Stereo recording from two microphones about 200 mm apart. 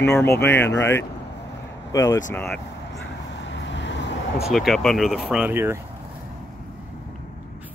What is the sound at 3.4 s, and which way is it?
Vehicle, 65° left (ahead or behind).